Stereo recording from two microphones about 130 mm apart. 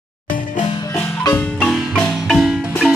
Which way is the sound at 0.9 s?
20° left (ahead or behind).